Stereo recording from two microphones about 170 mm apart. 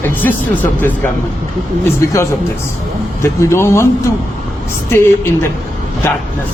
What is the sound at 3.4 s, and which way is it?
Speech, 15° left (ahead or behind).